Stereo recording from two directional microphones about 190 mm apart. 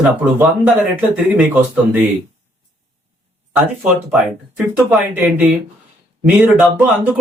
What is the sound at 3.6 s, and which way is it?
Speech, 5° right (ahead or behind).